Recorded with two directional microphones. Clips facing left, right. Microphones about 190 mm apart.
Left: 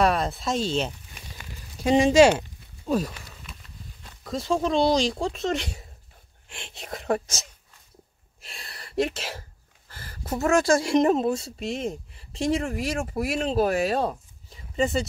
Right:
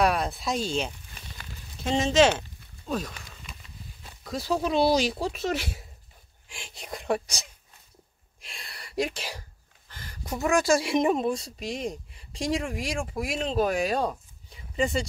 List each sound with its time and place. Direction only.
0.0 s speech: centre (ahead or behind)
1.1 s a sound: 10° left (ahead or behind)
4.0 s speech: centre (ahead or behind)
8.5 s speech: 5° left (ahead or behind)